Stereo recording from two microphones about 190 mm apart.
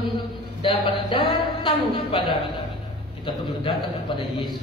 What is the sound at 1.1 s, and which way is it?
A woman's voice, 30° left (ahead or behind).